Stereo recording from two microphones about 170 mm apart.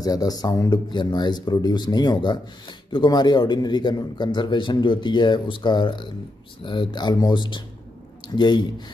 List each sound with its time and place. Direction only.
0.0 s a man's voice: 20° left (ahead or behind)